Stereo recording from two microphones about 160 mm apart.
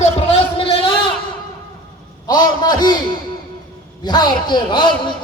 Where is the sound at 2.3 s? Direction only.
25° left (ahead or behind).